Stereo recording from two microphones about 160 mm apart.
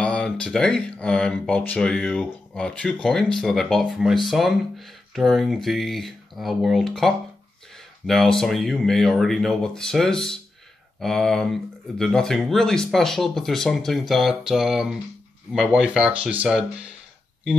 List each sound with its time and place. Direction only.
0.0 s speech: 5° left (ahead or behind)